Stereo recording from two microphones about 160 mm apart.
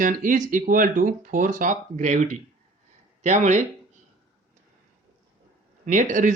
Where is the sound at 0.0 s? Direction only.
55° right (ahead or behind).